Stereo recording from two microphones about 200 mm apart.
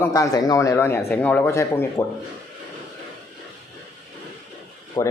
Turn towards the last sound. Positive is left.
turn(degrees=15)  # may be behind; listen again after turning